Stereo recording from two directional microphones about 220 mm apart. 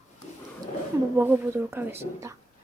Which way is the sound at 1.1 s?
10° right (ahead or behind).